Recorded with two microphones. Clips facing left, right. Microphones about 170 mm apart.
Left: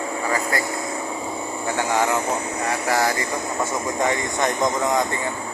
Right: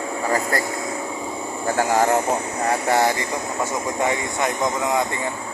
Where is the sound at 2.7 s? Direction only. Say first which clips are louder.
Right 3 dB; 25° right (ahead or behind).